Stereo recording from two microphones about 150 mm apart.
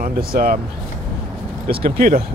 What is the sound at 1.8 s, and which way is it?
Speech, 80° right.